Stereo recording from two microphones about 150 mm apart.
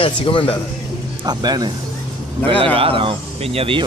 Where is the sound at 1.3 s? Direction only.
25° right (ahead or behind).